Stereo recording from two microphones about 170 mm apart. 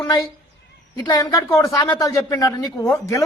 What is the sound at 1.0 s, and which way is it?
A man's voice, 20° left (ahead or behind).